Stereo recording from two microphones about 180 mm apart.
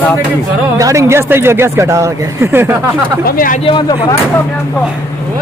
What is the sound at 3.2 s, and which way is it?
Speech, 50° left (ahead or behind).